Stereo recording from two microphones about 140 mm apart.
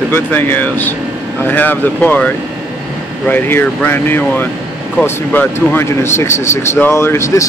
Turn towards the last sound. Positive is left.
turn(degrees=20)  # may be behind; listen again after turning